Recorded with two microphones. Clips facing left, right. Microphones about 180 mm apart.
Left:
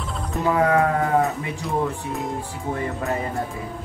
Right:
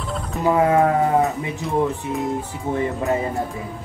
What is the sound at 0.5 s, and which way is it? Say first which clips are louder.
Speech: right 3 dB; 20° right (ahead or behind).